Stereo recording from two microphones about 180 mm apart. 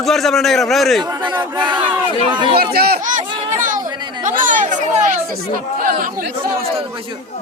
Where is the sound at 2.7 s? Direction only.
60° right (ahead or behind).